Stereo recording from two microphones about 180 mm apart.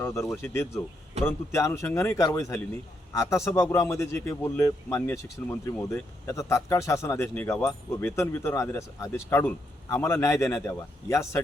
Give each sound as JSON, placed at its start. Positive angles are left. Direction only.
{"t": 0.0, "sound": "speech", "side_deg": 15}